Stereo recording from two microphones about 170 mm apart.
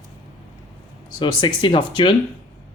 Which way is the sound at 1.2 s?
25° left (ahead or behind).